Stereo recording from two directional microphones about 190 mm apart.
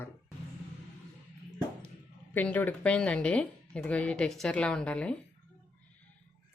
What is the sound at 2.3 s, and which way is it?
A woman's voice, 10° left (ahead or behind).